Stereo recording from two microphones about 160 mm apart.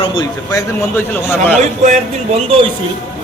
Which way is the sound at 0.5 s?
15° left (ahead or behind).